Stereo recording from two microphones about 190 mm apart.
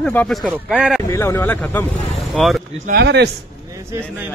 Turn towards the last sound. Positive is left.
turn(degrees=-10)  # may be behind; listen again after turning